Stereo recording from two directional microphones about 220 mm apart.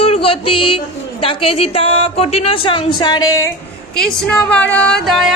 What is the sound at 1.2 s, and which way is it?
A woman's voice, 25° left (ahead or behind).